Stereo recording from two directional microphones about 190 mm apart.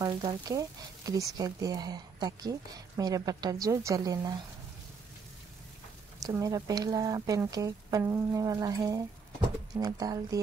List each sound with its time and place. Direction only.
0.0 s speech: 20° right (ahead or behind)
6.2 s speech: 20° right (ahead or behind)